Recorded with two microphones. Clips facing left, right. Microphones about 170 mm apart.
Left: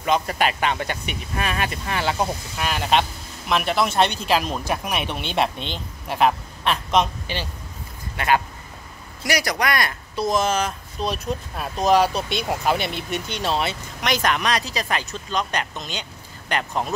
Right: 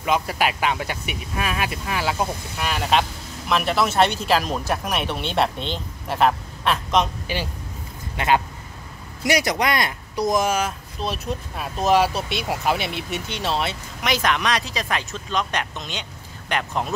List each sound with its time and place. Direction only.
0.0 s a man's voice: 5° right (ahead or behind)
8.2 s speech: 20° right (ahead or behind); by 16.9 s centre (ahead or behind)